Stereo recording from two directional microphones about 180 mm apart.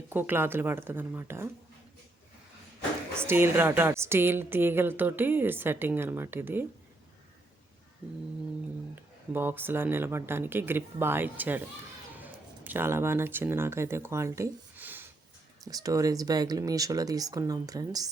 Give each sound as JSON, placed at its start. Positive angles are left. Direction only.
{"t": 0.1, "sound": "a woman's voice", "side_deg": -10}
{"t": 3.2, "sound": "a woman's voice", "side_deg": -15}
{"t": 9.0, "sound": "a woman's voice", "side_deg": -10}